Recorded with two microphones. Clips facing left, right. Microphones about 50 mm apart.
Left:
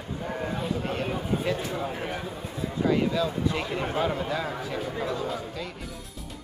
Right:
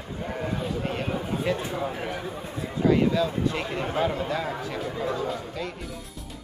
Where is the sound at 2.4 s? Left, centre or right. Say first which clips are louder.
Left 1 dB; right.